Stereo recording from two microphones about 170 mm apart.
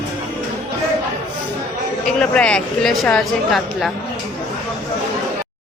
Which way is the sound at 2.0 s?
5° left (ahead or behind).